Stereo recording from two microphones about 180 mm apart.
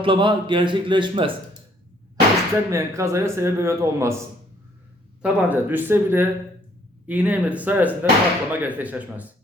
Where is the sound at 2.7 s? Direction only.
15° right (ahead or behind).